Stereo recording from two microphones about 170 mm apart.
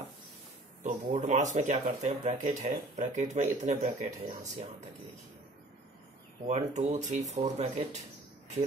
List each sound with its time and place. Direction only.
0.8 s speech: 45° right (ahead or behind)
6.4 s speech: 45° right (ahead or behind)